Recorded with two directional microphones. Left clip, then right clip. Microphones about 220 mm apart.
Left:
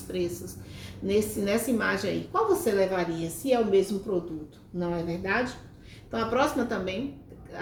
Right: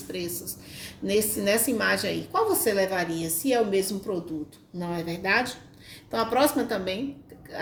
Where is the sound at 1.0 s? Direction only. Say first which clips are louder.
Right 2 dB; 45° right (ahead or behind).